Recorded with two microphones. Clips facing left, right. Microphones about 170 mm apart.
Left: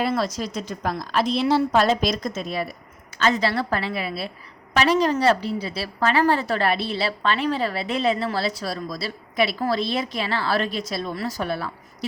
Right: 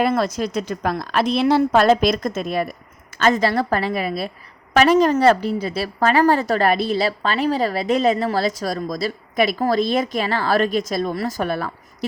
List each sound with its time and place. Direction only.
0.0 s a woman's voice: 55° right (ahead or behind)